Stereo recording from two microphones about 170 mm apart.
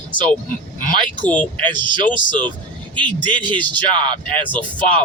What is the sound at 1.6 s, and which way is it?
Speech, 25° right (ahead or behind).